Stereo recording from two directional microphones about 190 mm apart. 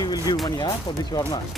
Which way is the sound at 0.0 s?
20° left (ahead or behind).